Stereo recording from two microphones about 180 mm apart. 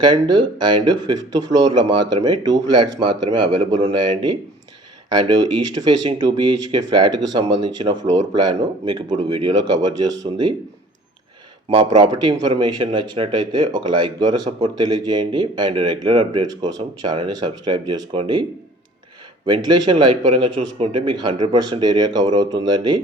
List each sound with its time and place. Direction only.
0.0 s a man's voice: 25° right (ahead or behind)
4.1 s a man's voice: 25° right (ahead or behind)
9.0 s speech: 40° right (ahead or behind)
9.6 s a man's voice: 20° right (ahead or behind)
11.7 s a man's voice: 25° right (ahead or behind)
19.5 s a man's voice: 25° right (ahead or behind)